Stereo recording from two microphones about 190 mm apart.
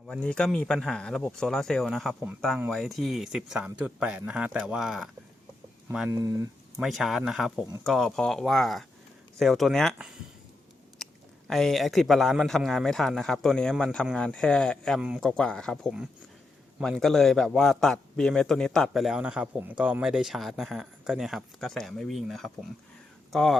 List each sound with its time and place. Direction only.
0.1 s a man's voice: 5° left (ahead or behind)
6.1 s speech: 20° right (ahead or behind)
6.7 s a man's voice: centre (ahead or behind)